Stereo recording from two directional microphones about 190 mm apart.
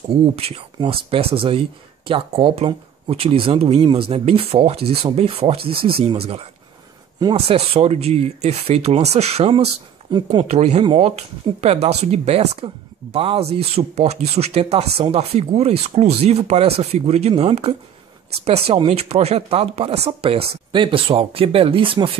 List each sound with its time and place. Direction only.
0.4 s speech: 30° right (ahead or behind)